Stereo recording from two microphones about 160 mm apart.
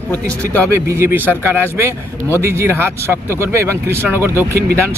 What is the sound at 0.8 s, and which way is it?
Speech, 15° right (ahead or behind).